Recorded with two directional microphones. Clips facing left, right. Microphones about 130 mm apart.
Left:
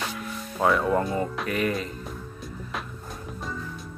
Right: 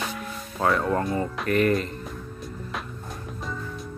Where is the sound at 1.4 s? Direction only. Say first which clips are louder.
Right 5 dB; centre (ahead or behind).